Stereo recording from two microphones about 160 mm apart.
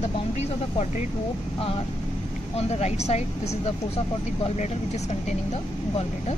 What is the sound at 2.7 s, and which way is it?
Speech, 45° left (ahead or behind).